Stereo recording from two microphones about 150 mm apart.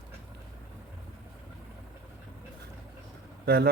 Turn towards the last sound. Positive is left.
turn(degrees=-90)